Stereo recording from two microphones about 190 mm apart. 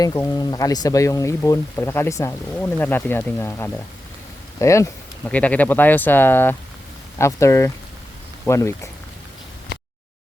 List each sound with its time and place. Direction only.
0.0 s speech: 20° left (ahead or behind)